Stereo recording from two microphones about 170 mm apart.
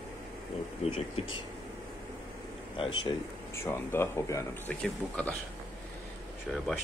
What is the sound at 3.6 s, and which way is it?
Speech, 15° left (ahead or behind).